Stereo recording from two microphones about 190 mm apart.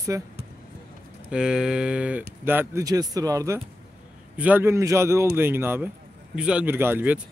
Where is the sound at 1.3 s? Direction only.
5° right (ahead or behind).